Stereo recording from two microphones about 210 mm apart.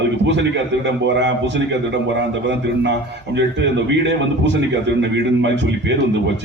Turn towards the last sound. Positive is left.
turn(degrees=-60)  # may be behind; listen again after turning